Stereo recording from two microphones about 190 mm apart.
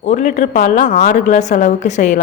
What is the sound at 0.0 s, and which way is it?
A woman's voice, 40° left (ahead or behind).